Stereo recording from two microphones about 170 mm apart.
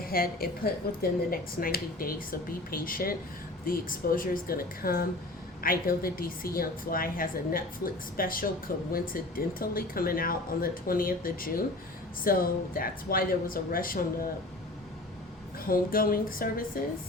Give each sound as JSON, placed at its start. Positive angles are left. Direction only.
{"t": 0.0, "sound": "speech", "side_deg": 60}
{"t": 15.6, "sound": "speech", "side_deg": 60}